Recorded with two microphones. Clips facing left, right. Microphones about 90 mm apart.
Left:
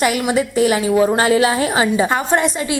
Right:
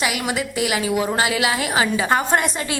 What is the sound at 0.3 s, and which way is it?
A woman's voice, 35° left (ahead or behind).